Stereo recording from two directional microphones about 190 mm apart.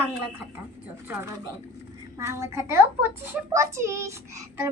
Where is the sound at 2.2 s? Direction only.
15° right (ahead or behind).